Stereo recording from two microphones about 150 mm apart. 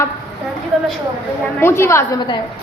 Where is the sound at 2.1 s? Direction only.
30° left (ahead or behind).